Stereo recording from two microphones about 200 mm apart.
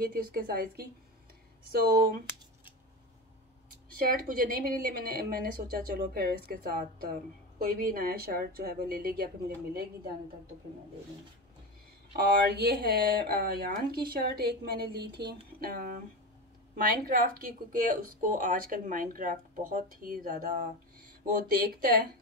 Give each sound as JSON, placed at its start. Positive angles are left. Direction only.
{"t": 0.0, "sound": "speech", "side_deg": -45}
{"t": 4.0, "sound": "speech", "side_deg": -45}
{"t": 12.4, "sound": "speech", "side_deg": -50}